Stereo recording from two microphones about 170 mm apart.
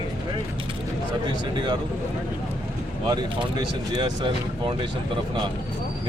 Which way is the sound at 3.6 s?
30° right (ahead or behind).